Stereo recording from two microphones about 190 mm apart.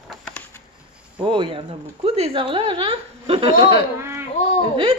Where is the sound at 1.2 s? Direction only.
25° right (ahead or behind).